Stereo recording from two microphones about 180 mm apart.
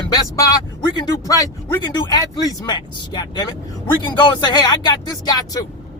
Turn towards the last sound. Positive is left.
turn(degrees=20)  # may be behind; listen again after turning